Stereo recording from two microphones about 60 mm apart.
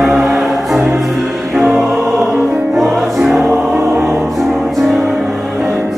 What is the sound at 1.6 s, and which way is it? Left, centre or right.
Music, centre.